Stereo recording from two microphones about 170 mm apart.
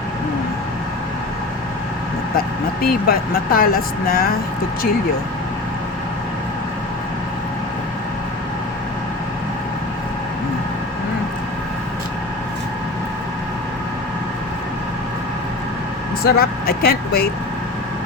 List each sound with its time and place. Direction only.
2.8 s speech: 60° left (ahead or behind)
16.2 s speech: 65° left (ahead or behind)